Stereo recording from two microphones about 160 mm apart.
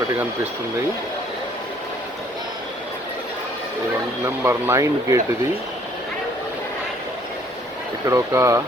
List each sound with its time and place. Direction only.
4.4 s speech: 15° right (ahead or behind)
8.0 s speech: 20° right (ahead or behind)